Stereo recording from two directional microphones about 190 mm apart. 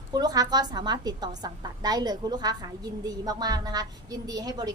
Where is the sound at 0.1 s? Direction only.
20° right (ahead or behind).